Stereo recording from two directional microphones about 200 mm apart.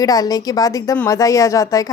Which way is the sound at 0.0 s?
20° left (ahead or behind).